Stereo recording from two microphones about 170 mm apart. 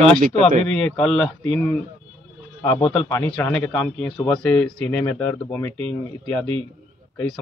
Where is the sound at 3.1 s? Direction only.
10° left (ahead or behind).